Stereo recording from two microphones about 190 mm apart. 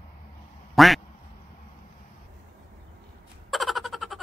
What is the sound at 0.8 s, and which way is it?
Quack, centre (ahead or behind).